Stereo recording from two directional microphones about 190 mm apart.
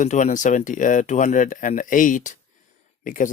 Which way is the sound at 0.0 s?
40° left (ahead or behind).